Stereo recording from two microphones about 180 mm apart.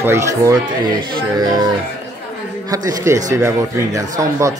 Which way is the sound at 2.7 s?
20° right (ahead or behind).